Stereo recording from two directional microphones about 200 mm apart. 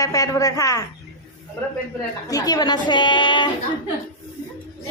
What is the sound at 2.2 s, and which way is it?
A woman's voice, 20° left (ahead or behind).